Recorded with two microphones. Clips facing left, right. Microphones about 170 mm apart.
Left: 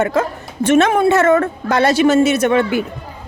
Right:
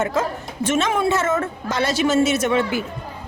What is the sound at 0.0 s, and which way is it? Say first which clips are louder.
Speech: left 4 dB; 65° left (ahead or behind).